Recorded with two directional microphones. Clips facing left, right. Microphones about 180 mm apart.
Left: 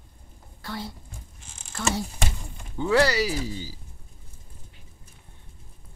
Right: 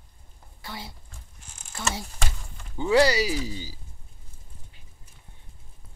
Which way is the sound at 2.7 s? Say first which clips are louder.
Right 1 dB; 15° right (ahead or behind).